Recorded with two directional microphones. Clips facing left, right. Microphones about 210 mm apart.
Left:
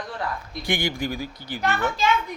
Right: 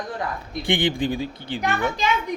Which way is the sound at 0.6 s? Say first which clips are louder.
Right 4 dB; 30° right (ahead or behind).